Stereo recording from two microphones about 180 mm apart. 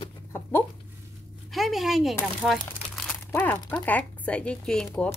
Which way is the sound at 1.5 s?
Centre (ahead or behind).